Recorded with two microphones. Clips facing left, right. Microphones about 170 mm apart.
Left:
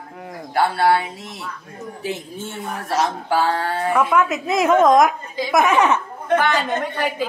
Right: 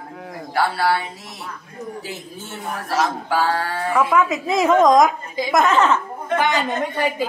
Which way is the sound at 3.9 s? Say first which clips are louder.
Right 1 dB; 5° left (ahead or behind).